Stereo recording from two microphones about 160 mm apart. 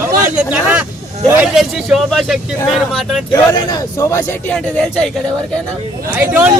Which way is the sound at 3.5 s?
20° left (ahead or behind).